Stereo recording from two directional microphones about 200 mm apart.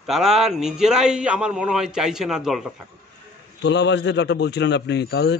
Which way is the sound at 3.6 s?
60° left (ahead or behind).